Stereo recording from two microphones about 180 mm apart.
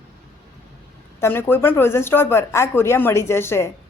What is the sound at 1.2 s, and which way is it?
Speech, 10° left (ahead or behind).